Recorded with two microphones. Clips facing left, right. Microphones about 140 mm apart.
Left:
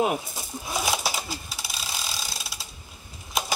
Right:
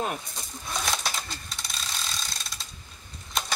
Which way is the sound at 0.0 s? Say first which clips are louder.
Left 6 dB; 10° left (ahead or behind).